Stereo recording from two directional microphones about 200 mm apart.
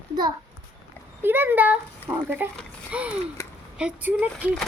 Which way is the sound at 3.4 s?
15° left (ahead or behind).